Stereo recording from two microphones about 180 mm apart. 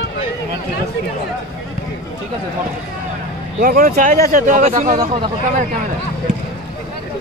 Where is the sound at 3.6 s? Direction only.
55° right (ahead or behind).